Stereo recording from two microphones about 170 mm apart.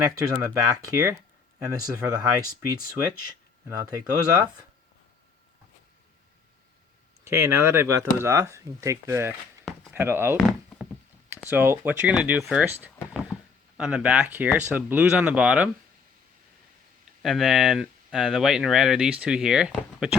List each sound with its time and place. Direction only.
0.0 s speech: 20° right (ahead or behind)
7.3 s speech: 15° right (ahead or behind)
10.8 s a sound: 5° right (ahead or behind)
11.4 s speech: 15° right (ahead or behind)
17.2 s speech: centre (ahead or behind)